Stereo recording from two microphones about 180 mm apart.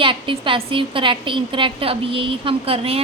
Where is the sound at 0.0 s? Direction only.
30° right (ahead or behind).